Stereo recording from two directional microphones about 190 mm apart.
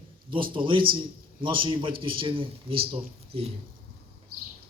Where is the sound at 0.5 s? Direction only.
25° right (ahead or behind).